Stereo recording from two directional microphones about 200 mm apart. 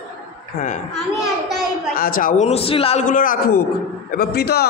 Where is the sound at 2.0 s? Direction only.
45° left (ahead or behind).